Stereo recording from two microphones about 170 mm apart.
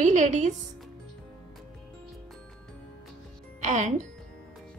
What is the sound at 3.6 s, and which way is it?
Speech, 45° right (ahead or behind).